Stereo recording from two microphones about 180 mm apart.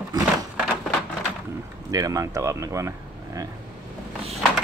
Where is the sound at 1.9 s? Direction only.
20° right (ahead or behind).